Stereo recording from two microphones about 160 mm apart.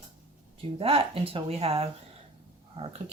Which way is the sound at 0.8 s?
35° right (ahead or behind).